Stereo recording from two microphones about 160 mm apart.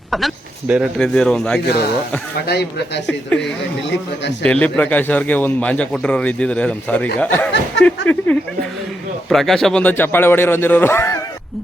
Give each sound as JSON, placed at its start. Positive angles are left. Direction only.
{"t": 0.1, "sound": "a man's voice", "side_deg": 0}
{"t": 2.5, "sound": "speech", "side_deg": 90}
{"t": 3.1, "sound": "a man's voice", "side_deg": 5}
{"t": 3.4, "sound": "speech", "side_deg": 90}
{"t": 4.4, "sound": "a man's voice", "side_deg": 10}